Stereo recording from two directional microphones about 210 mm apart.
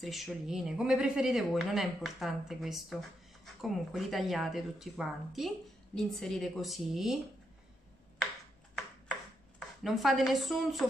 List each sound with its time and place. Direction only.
0.0 s speech: centre (ahead or behind)
9.8 s speech: centre (ahead or behind)